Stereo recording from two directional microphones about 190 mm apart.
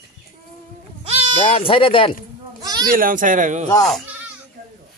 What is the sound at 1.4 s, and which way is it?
Speech, 30° left (ahead or behind).